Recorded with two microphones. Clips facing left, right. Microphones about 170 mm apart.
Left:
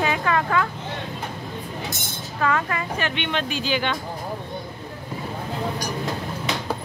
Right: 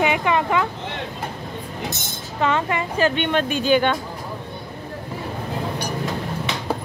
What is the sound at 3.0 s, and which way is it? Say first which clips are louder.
Speech: right 9 dB; 45° right (ahead or behind).